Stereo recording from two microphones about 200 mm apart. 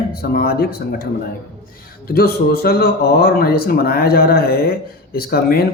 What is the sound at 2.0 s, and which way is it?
Speech, 50° left (ahead or behind).